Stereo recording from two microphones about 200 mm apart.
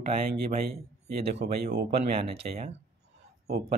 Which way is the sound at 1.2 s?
55° right (ahead or behind).